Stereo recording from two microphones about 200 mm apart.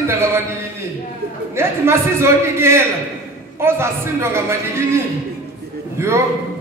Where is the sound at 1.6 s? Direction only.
15° right (ahead or behind).